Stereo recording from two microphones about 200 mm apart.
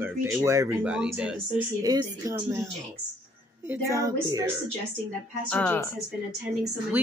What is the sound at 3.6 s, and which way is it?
Speech, 15° right (ahead or behind).